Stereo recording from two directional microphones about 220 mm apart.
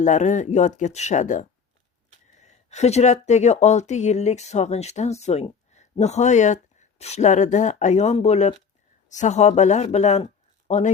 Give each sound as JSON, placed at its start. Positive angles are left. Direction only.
{"t": 0.0, "sound": "speech", "side_deg": 35}